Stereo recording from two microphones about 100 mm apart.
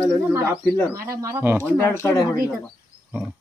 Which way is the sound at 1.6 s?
20° left (ahead or behind).